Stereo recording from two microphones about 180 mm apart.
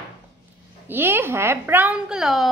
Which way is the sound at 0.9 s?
10° right (ahead or behind).